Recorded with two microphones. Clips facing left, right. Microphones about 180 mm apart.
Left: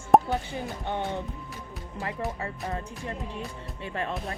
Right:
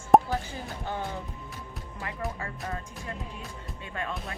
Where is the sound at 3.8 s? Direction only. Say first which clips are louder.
Left 4 dB; 30° left (ahead or behind).